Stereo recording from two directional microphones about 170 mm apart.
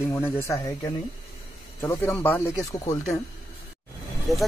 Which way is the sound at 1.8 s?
15° left (ahead or behind).